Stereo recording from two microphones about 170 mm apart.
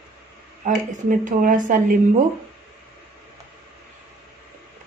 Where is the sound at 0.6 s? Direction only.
50° right (ahead or behind).